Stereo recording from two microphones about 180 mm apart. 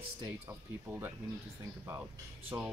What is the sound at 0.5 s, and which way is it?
Speech, 10° right (ahead or behind).